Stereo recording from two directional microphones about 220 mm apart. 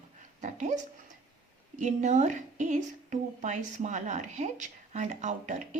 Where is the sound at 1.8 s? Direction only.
35° right (ahead or behind).